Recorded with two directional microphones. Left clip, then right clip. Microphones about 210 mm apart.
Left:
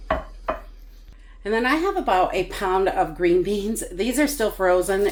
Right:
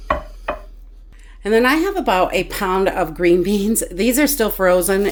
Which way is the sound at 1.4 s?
60° right (ahead or behind).